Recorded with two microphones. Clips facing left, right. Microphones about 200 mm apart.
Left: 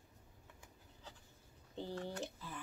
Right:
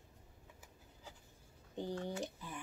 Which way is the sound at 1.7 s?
15° right (ahead or behind).